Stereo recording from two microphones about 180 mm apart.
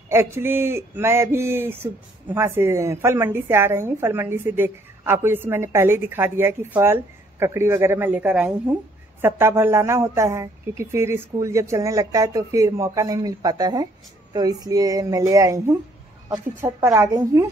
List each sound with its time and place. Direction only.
0.1 s a woman's voice: 15° right (ahead or behind)